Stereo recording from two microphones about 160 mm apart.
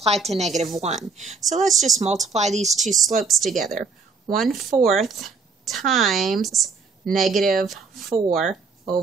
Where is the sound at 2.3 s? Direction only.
45° right (ahead or behind).